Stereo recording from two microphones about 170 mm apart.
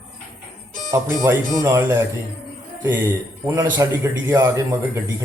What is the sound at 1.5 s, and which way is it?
Speech, 15° right (ahead or behind).